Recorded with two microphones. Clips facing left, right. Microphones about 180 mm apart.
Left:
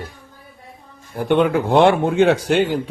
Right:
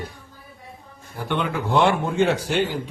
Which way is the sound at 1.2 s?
55° left (ahead or behind).